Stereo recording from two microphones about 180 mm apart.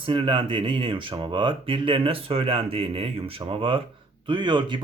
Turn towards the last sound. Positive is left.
turn(degrees=-25)  # may be behind; listen again after turning